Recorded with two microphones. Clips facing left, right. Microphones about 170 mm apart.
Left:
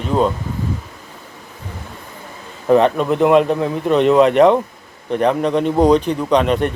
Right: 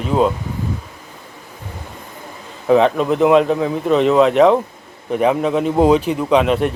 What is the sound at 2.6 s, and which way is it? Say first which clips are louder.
Speech: even; centre (ahead or behind).